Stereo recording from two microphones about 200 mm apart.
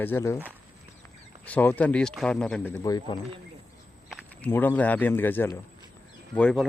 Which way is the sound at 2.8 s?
20° left (ahead or behind).